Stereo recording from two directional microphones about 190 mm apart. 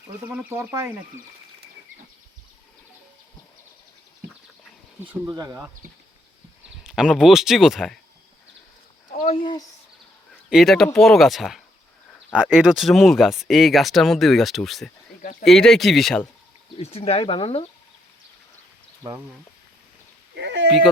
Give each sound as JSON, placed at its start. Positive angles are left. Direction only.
{"t": 0.3, "sound": "speech", "side_deg": -10}
{"t": 4.9, "sound": "speech", "side_deg": -10}
{"t": 6.8, "sound": "speech", "side_deg": -5}
{"t": 9.2, "sound": "speech", "side_deg": 30}
{"t": 10.5, "sound": "speech", "side_deg": 0}
{"t": 15.2, "sound": "speech", "side_deg": 45}
{"t": 15.4, "sound": "speech", "side_deg": 0}
{"t": 16.7, "sound": "speech", "side_deg": 35}
{"t": 20.3, "sound": "a sound", "side_deg": -65}